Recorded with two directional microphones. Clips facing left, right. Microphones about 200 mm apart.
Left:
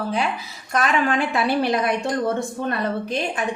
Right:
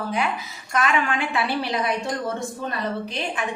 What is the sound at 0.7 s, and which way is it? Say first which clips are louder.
Speech: left 2 dB; 35° left (ahead or behind).